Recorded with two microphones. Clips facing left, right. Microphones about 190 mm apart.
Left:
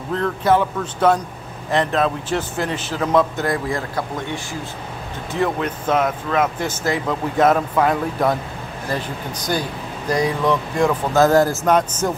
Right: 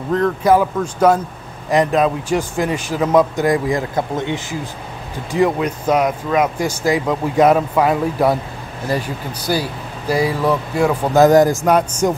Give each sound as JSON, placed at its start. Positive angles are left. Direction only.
{"t": 0.1, "sound": "speech", "side_deg": 0}